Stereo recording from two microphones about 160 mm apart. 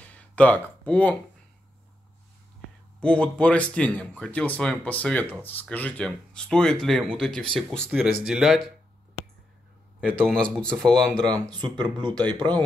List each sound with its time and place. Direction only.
0.0 s a sound: 10° left (ahead or behind)
3.0 s speech: 5° left (ahead or behind)
10.1 s speech: 5° left (ahead or behind)
11.5 s speech: 25° right (ahead or behind)